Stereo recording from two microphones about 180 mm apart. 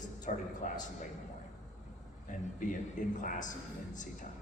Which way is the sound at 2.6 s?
45° left (ahead or behind).